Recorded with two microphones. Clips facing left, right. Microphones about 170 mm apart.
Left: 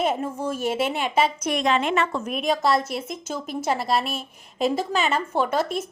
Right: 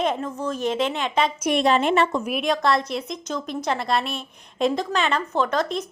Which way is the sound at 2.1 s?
10° right (ahead or behind).